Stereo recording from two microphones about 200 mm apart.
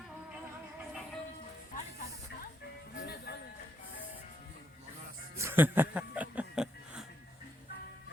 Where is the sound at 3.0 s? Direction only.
50° left (ahead or behind).